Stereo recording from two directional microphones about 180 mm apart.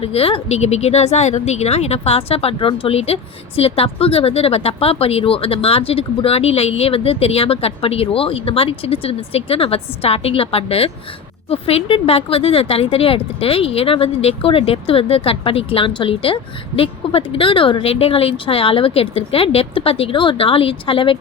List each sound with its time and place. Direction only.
0.0 s speech: 30° left (ahead or behind)